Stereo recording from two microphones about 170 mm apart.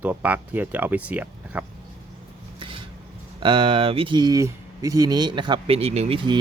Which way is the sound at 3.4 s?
30° right (ahead or behind).